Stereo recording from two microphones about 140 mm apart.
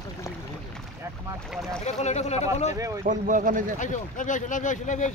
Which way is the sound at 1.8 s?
55° left (ahead or behind).